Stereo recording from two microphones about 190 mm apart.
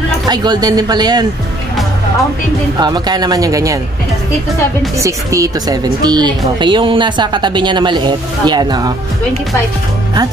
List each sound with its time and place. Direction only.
0.3 s speech: 20° right (ahead or behind)
2.8 s speech: 20° right (ahead or behind)
4.9 s speech: 15° right (ahead or behind)